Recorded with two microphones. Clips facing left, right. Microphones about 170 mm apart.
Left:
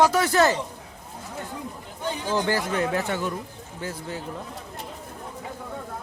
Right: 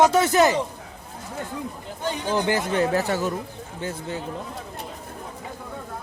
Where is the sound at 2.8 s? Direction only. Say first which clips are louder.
Right 3 dB; 40° right (ahead or behind).